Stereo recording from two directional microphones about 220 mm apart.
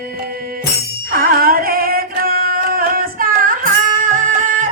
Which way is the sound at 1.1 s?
40° right (ahead or behind).